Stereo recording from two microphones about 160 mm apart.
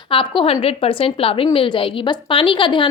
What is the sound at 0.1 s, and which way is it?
A woman's voice, 30° left (ahead or behind).